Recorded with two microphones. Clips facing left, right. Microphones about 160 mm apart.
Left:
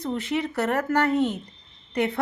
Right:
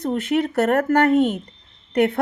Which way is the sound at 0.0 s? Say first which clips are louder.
Right 6 dB; 55° right (ahead or behind).